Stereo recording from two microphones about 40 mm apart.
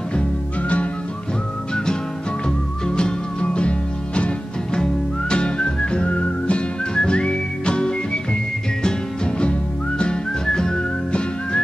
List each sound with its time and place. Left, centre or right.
0.1 s music: left
2.4 s music: left
5.3 s whistling: left